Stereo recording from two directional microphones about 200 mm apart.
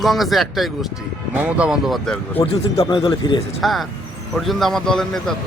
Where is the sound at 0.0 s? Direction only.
Centre (ahead or behind).